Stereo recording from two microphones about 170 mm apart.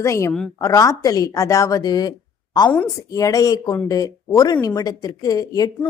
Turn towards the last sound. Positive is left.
turn(degrees=20)  # may be behind; listen again after turning